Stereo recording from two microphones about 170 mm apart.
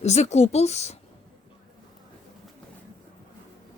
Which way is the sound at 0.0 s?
40° left (ahead or behind).